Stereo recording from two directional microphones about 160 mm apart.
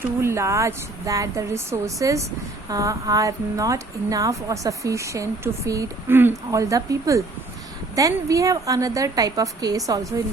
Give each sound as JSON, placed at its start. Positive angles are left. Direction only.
{"t": 0.0, "sound": "a woman's voice", "side_deg": -15}